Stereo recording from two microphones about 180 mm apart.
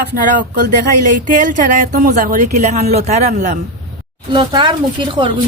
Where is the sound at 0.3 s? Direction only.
45° right (ahead or behind).